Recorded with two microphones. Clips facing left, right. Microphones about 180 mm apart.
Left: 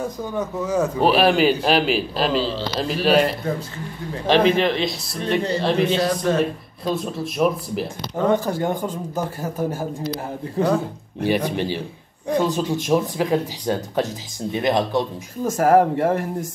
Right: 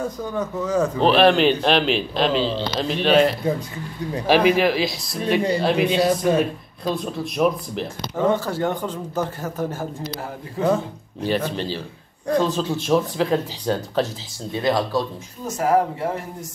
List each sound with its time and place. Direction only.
0.0 s a man's voice: 10° left (ahead or behind)
4.5 s a man's voice: 5° right (ahead or behind); by 9.8 s 10° left (ahead or behind)
11.2 s a man's voice: 15° left (ahead or behind)
15.5 s speech: 50° left (ahead or behind)